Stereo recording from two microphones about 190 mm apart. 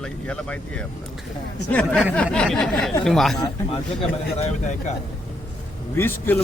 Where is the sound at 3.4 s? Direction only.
25° left (ahead or behind).